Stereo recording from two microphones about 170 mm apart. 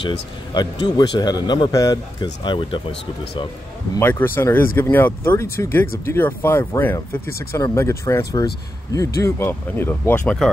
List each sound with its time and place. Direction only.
0.6 s speech: 25° left (ahead or behind)
3.9 s speech: 15° left (ahead or behind)